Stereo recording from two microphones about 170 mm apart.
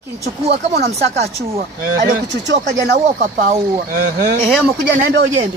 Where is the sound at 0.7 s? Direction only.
40° right (ahead or behind).